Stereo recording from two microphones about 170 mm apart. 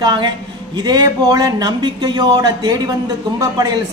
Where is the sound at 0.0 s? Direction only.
25° right (ahead or behind).